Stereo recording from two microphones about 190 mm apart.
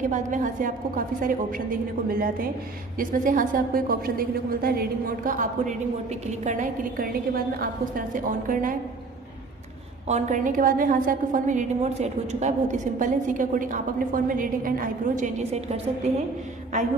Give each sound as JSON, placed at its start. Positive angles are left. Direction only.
{"t": 0.1, "sound": "a woman's voice", "side_deg": -40}
{"t": 10.0, "sound": "a woman's voice", "side_deg": -35}